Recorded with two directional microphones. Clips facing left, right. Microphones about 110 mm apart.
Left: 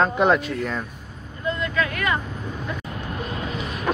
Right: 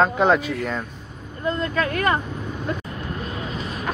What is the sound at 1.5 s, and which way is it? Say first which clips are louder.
Speech: right 1 dB; 40° right (ahead or behind).